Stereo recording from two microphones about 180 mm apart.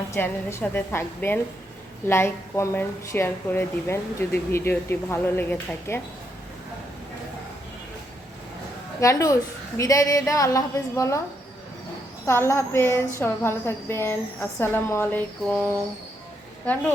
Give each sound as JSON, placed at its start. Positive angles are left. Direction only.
{"t": 0.1, "sound": "a woman's voice", "side_deg": 15}
{"t": 9.0, "sound": "a woman's voice", "side_deg": 20}
{"t": 12.2, "sound": "a woman's voice", "side_deg": 15}